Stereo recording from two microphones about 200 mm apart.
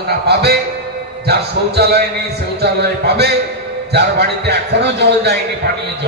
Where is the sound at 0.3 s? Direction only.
55° right (ahead or behind).